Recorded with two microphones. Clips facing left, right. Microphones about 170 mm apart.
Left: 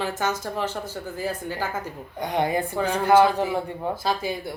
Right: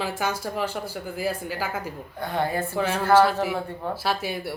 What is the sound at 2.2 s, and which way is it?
Speech, 15° left (ahead or behind).